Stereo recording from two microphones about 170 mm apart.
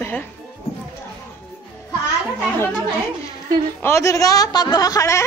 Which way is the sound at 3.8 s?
15° left (ahead or behind).